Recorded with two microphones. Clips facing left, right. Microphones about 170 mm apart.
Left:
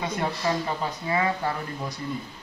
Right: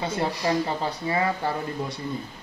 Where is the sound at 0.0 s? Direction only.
30° right (ahead or behind).